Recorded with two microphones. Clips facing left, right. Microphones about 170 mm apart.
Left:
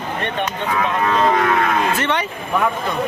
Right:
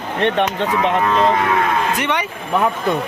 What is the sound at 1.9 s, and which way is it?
Speech, 15° right (ahead or behind).